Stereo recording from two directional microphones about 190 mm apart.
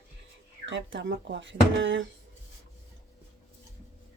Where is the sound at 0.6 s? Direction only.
75° right (ahead or behind).